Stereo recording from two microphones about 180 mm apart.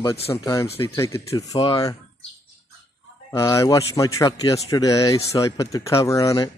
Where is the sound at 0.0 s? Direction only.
20° left (ahead or behind).